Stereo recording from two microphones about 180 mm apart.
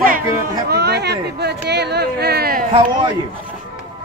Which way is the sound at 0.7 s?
65° right (ahead or behind).